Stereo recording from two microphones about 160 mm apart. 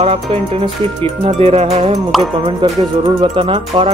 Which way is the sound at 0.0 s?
40° right (ahead or behind).